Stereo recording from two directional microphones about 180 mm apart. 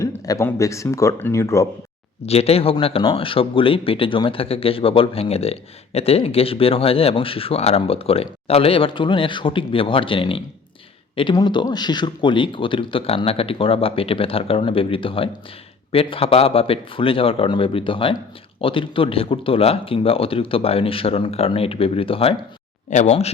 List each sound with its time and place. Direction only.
0.3 s speech: 15° left (ahead or behind)
2.2 s a man's voice: 35° left (ahead or behind)
22.9 s a man's voice: 40° left (ahead or behind)